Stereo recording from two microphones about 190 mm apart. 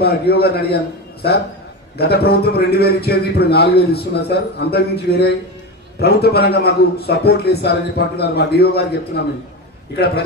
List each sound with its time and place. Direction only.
0.0 s a man's voice: 55° left (ahead or behind)